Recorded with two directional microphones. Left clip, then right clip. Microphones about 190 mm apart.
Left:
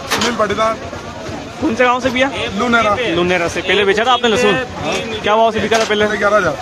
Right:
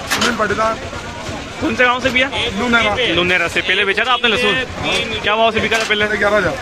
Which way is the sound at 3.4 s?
10° left (ahead or behind).